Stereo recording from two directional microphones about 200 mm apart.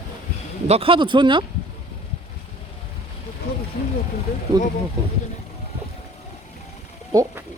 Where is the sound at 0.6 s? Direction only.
30° right (ahead or behind).